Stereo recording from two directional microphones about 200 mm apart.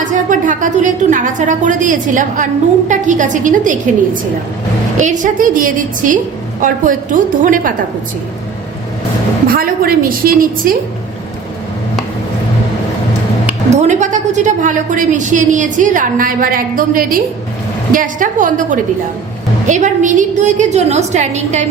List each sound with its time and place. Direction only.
0.0 s a woman's voice: 40° right (ahead or behind)
9.5 s a woman's voice: 45° right (ahead or behind)
13.7 s a woman's voice: 35° right (ahead or behind)